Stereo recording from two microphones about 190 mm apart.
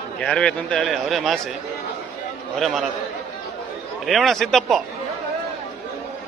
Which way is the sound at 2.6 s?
Centre (ahead or behind).